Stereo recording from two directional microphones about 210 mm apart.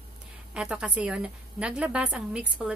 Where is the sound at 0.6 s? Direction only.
5° right (ahead or behind).